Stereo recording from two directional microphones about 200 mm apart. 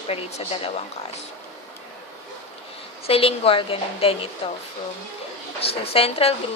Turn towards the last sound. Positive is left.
turn(degrees=30)  # may be behind; listen again after turning